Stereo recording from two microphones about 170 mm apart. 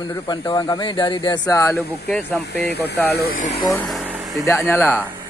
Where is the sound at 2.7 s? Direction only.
75° left (ahead or behind).